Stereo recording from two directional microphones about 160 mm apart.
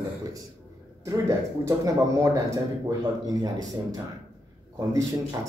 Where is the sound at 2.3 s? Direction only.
20° right (ahead or behind).